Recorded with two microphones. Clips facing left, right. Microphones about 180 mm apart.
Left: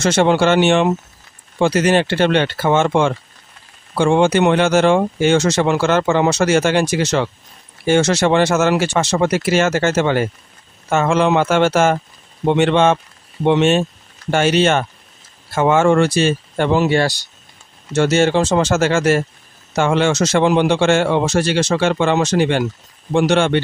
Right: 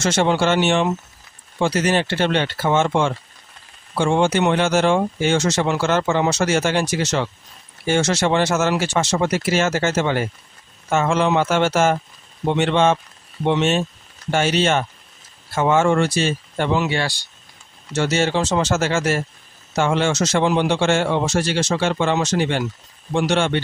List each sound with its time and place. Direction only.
0.0 s speech: 60° left (ahead or behind)
16.8 s speech: 40° left (ahead or behind)
17.9 s speech: 50° left (ahead or behind)